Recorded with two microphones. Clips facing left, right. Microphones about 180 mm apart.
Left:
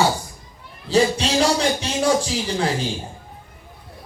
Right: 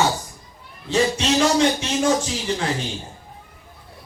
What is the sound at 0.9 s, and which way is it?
Speech, 35° left (ahead or behind).